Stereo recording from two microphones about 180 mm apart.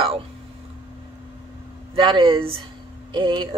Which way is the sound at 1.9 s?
25° right (ahead or behind).